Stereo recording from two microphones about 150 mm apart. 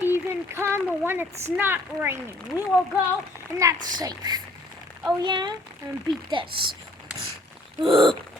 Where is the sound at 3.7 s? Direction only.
60° right (ahead or behind).